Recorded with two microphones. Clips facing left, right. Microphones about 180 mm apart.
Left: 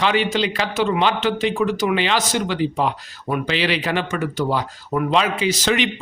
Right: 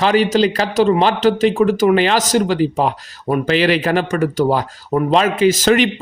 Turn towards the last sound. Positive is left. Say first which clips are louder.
# right 7 dB
turn(degrees=-45)  # may be behind; listen again after turning